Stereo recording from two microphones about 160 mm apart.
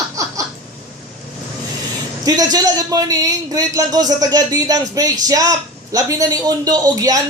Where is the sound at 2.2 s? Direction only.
25° right (ahead or behind).